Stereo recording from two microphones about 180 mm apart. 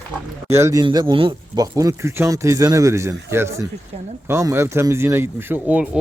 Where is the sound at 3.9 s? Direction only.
35° right (ahead or behind).